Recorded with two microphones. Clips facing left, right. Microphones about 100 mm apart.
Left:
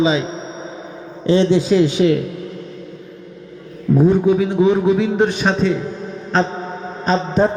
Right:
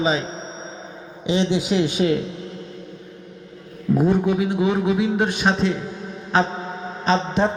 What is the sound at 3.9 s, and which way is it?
A man's voice, 15° right (ahead or behind).